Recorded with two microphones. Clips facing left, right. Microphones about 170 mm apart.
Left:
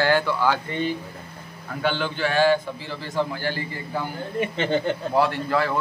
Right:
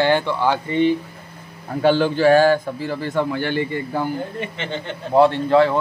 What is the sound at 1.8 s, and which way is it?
A man's voice, 40° right (ahead or behind).